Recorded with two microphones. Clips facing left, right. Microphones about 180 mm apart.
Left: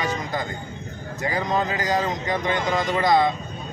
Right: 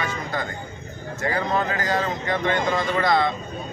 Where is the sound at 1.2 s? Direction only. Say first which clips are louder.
Even; 15° left (ahead or behind).